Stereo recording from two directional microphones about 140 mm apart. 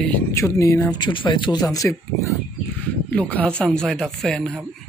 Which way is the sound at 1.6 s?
20° left (ahead or behind).